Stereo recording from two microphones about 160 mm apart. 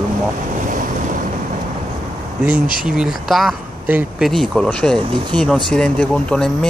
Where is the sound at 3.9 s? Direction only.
10° right (ahead or behind).